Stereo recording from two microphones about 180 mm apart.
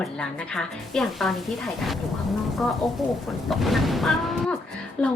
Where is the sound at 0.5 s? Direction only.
Centre (ahead or behind).